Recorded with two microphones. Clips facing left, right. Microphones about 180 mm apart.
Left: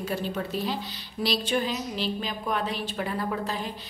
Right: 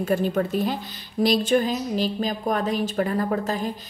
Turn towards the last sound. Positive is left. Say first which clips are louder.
# right 5 dB
turn(degrees=-45)  # may be behind; listen again after turning